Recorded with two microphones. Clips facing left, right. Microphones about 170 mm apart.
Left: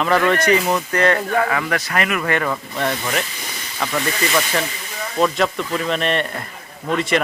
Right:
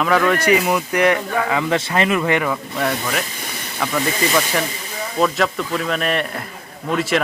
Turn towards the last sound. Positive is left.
turn(degrees=0)  # may be behind; listen again after turning